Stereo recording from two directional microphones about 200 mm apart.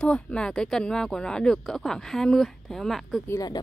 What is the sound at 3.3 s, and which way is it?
Speech, 20° left (ahead or behind).